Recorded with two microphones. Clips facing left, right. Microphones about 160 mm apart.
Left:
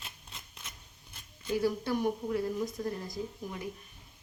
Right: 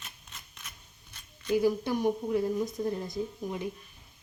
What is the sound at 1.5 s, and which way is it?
A woman's voice, 15° right (ahead or behind).